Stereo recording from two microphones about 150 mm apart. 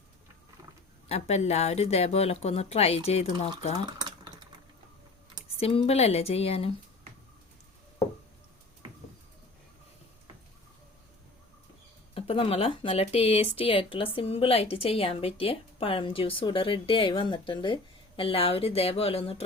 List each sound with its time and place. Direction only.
1.0 s speech: 45° left (ahead or behind)
4.0 s typing: 30° right (ahead or behind)
5.5 s a woman's voice: 40° left (ahead or behind)
12.1 s a woman's voice: 40° left (ahead or behind)